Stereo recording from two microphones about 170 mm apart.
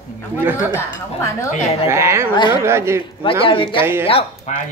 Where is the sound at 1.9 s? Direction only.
15° right (ahead or behind).